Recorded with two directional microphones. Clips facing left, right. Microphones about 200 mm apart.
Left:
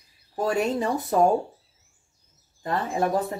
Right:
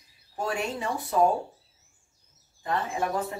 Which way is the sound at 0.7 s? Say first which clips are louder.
Left 6 dB; 40° left (ahead or behind).